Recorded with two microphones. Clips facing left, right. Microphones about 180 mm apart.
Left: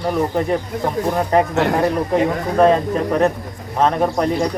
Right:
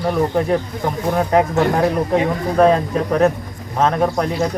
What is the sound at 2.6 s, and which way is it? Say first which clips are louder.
Speech: even; centre (ahead or behind).